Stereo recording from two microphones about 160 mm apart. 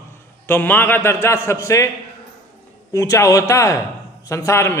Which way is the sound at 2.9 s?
20° left (ahead or behind).